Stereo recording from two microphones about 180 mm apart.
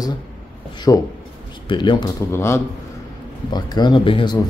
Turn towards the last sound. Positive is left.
turn(degrees=30)  # may be behind; listen again after turning